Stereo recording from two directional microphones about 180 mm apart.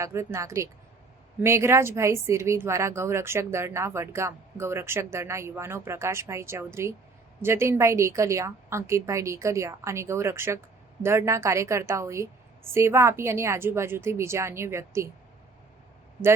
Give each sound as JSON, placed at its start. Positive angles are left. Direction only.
{"t": 0.0, "sound": "speech", "side_deg": -15}